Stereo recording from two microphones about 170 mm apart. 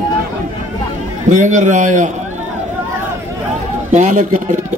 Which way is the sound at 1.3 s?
45° right (ahead or behind).